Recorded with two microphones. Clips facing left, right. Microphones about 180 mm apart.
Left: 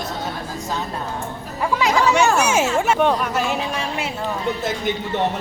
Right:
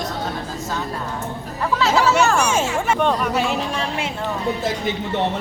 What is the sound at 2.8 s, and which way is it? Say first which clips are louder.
Speech: left 1 dB; 10° left (ahead or behind).